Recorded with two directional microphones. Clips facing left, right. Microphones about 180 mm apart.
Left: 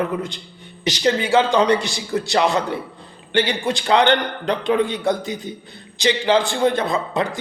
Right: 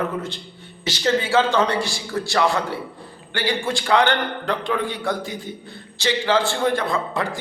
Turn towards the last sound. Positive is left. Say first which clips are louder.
# left 3 dB
turn(degrees=20)  # may be behind; listen again after turning